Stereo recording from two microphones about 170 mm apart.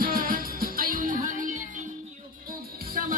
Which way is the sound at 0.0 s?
55° right (ahead or behind).